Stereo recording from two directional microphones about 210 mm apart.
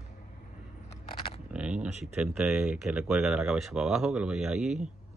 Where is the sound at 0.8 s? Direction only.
25° left (ahead or behind).